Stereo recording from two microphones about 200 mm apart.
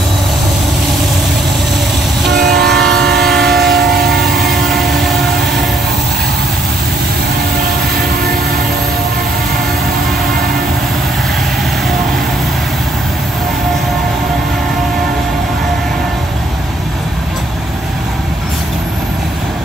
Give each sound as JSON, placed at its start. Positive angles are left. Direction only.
{"t": 2.2, "sound": "train", "side_deg": -55}
{"t": 3.4, "sound": "train", "side_deg": 0}